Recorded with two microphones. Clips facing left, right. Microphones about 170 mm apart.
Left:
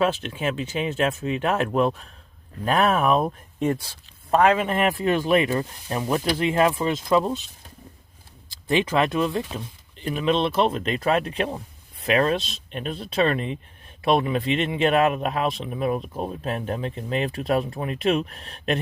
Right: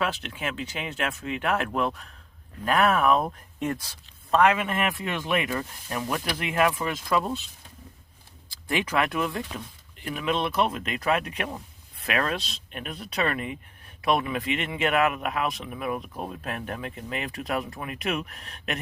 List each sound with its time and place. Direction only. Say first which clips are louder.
0.0 s speech: left 6 dB; 25° left (ahead or behind)
8.6 s speech: left 5 dB; 20° left (ahead or behind)